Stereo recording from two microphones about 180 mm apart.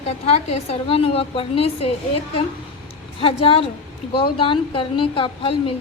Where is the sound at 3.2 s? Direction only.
30° left (ahead or behind).